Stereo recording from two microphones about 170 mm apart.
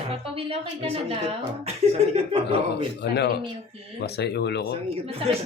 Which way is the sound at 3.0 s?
75° left (ahead or behind).